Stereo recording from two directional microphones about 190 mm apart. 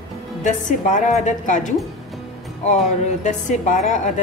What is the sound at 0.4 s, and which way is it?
A woman's voice, 40° left (ahead or behind).